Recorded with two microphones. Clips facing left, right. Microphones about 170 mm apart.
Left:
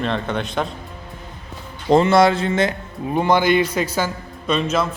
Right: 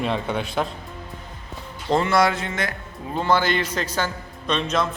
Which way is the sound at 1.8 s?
20° left (ahead or behind).